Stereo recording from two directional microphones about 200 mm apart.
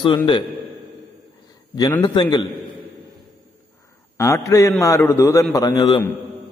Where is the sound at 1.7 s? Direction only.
20° left (ahead or behind).